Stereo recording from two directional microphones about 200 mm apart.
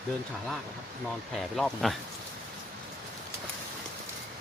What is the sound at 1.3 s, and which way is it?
Speech, centre (ahead or behind).